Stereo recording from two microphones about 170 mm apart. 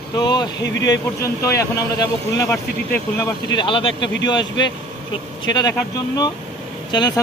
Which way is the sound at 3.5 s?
30° left (ahead or behind).